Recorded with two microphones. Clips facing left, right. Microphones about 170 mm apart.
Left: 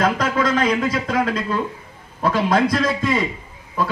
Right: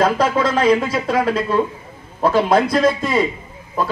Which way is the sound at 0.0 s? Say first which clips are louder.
Right 3 dB; 30° right (ahead or behind).